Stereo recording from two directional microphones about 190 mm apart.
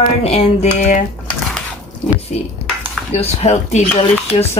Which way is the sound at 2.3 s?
35° left (ahead or behind).